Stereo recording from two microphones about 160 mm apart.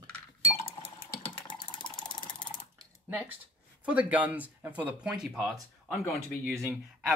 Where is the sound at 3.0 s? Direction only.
10° right (ahead or behind).